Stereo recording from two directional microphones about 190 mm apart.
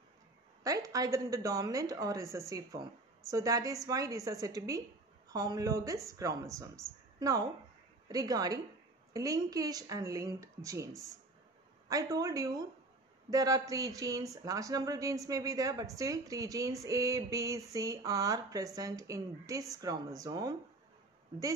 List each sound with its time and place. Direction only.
0.7 s speech: 20° right (ahead or behind)